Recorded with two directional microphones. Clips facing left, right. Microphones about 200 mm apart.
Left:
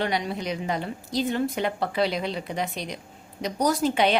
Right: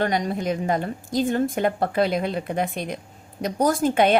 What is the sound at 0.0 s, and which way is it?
A woman's voice, 45° right (ahead or behind).